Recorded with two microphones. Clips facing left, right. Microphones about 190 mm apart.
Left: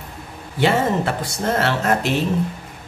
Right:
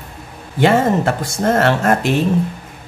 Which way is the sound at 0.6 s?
45° right (ahead or behind).